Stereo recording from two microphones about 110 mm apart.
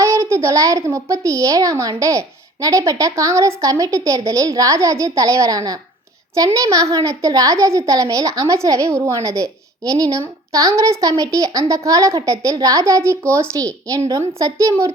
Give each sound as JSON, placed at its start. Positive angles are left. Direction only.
{"t": 0.0, "sound": "a child's voice", "side_deg": -25}